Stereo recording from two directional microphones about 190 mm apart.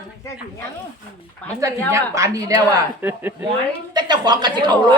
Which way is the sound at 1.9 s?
15° right (ahead or behind).